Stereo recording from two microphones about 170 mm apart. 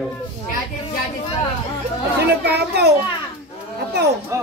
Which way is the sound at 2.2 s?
75° right (ahead or behind).